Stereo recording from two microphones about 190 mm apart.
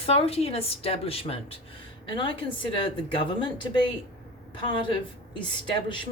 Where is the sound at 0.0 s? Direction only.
30° left (ahead or behind).